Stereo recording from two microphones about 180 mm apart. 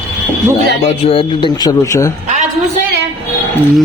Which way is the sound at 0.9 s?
30° left (ahead or behind).